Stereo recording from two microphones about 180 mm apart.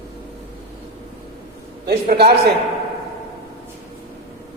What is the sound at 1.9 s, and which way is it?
Speech, 65° right (ahead or behind).